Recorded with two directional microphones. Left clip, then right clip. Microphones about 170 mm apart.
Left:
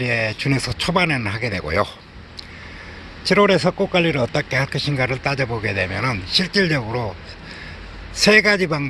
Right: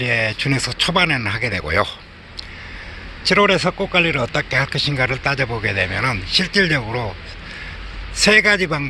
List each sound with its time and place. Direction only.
0.0 s speech: 10° left (ahead or behind)
3.2 s speech: 25° left (ahead or behind)
8.1 s a man's voice: 20° left (ahead or behind)